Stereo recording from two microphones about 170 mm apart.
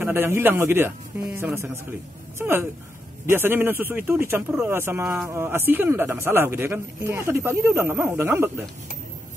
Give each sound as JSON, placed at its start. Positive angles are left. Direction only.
{"t": 0.0, "sound": "speech", "side_deg": -15}